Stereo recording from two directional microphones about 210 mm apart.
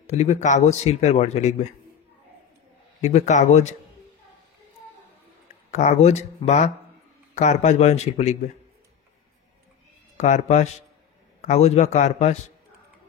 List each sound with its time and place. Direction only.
0.0 s speech: 35° left (ahead or behind)
3.0 s speech: 35° left (ahead or behind)
5.7 s speech: 35° left (ahead or behind)
10.1 s speech: 35° left (ahead or behind)